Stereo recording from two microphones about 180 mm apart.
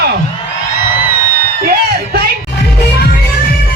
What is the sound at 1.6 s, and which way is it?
Music, 60° right (ahead or behind).